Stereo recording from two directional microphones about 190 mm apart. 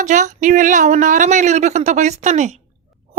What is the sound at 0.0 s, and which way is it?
A woman's voice, 40° right (ahead or behind).